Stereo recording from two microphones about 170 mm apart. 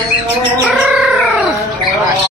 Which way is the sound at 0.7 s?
5° right (ahead or behind).